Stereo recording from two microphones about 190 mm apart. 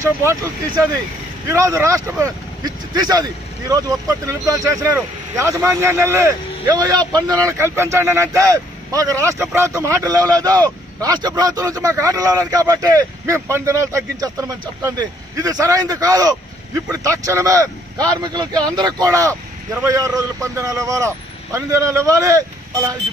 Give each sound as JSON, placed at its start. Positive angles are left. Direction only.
{"t": 0.0, "sound": "speech", "side_deg": -15}